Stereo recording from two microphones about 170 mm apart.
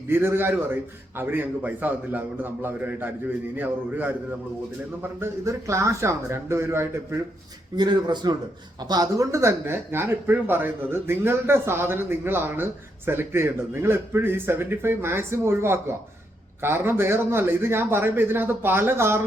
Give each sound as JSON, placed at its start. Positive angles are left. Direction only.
{"t": 0.1, "sound": "speech", "side_deg": -15}
{"t": 5.2, "sound": "speech", "side_deg": -15}
{"t": 7.8, "sound": "a man's voice", "side_deg": -25}